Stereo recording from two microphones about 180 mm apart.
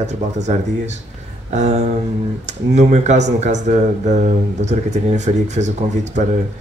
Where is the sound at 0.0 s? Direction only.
40° right (ahead or behind).